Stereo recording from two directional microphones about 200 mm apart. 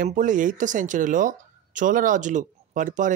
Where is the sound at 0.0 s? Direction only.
40° right (ahead or behind).